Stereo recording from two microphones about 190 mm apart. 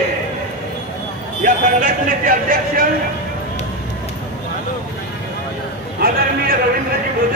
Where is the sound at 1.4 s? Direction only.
45° right (ahead or behind).